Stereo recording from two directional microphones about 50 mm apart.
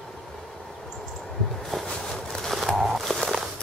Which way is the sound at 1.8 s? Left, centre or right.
Centre.